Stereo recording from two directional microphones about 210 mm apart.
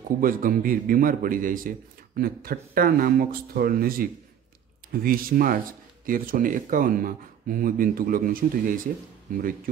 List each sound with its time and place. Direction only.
0.2 s a man's voice: 40° right (ahead or behind)